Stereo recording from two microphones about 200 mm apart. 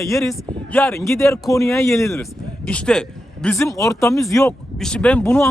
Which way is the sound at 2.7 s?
5° left (ahead or behind).